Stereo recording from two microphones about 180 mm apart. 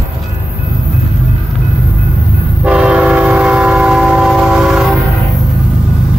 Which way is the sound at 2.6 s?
5° right (ahead or behind).